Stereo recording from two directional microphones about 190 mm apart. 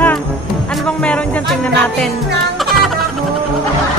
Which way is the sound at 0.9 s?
5° left (ahead or behind).